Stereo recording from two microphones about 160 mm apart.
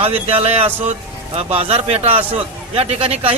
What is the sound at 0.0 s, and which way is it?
A man's voice, 35° right (ahead or behind).